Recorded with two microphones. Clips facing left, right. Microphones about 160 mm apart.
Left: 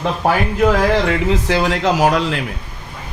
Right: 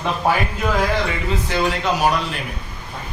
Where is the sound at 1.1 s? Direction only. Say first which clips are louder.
Left 7 dB; 85° left.